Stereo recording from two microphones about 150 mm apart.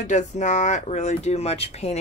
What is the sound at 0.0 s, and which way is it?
Speech, 55° left (ahead or behind).